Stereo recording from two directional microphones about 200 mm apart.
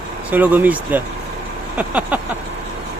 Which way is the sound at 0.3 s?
10° right (ahead or behind).